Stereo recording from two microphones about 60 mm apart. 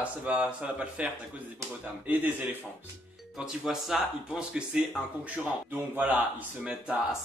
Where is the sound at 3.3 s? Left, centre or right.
Centre.